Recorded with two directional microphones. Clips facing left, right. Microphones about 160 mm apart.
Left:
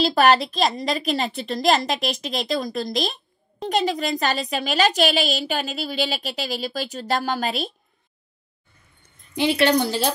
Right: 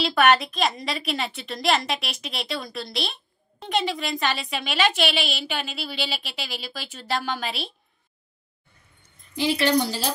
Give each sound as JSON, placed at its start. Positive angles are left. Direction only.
{"t": 0.0, "sound": "speech", "side_deg": 35}
{"t": 9.3, "sound": "speech", "side_deg": 60}